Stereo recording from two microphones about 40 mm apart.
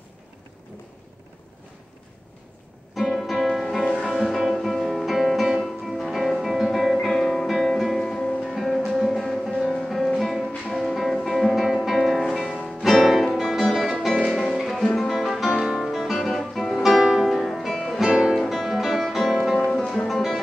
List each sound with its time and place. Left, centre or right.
3.0 s music: centre
3.8 s music: left
4.1 s music: centre
14.2 s music: centre
15.0 s music: centre
15.8 s guitar: centre
16.8 s music: centre
19.8 s music: left
20.1 s music: centre